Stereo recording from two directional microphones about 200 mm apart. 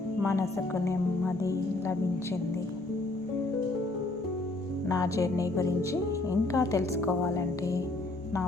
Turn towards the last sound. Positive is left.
turn(degrees=15)  # may be behind; listen again after turning